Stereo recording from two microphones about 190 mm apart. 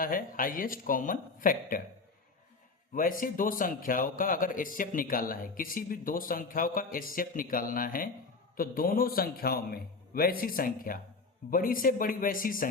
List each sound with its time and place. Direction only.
0.0 s a man's voice: 50° left (ahead or behind)
2.9 s a man's voice: 45° left (ahead or behind)